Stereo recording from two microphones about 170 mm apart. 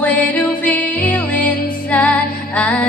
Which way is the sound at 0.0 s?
10° left (ahead or behind).